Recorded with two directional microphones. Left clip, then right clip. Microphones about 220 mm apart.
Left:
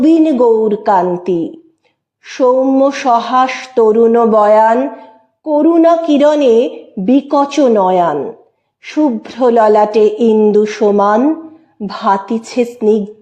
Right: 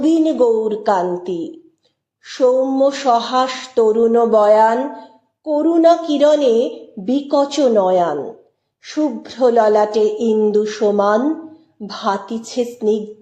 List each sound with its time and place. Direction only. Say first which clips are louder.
0.0 s mantra: left 5 dB; 35° left (ahead or behind)